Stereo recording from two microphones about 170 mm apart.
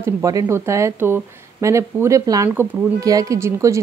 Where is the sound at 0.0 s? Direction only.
20° right (ahead or behind).